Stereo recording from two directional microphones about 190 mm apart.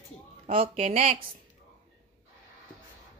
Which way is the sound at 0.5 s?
30° right (ahead or behind).